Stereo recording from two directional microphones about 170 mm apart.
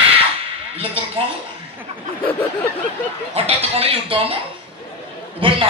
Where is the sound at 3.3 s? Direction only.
35° right (ahead or behind).